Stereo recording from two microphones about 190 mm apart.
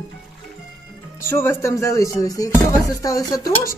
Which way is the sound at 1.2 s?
15° left (ahead or behind).